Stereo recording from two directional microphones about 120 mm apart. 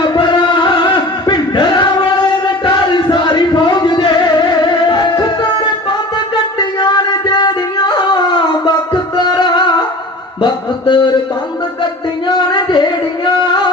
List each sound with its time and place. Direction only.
0.1 s music: 40° left (ahead or behind)
6.6 s a sound: 40° left (ahead or behind)
12.3 s music: 40° left (ahead or behind)